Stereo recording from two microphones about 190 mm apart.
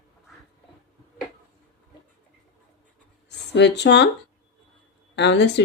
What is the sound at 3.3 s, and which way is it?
Speech, 65° left (ahead or behind).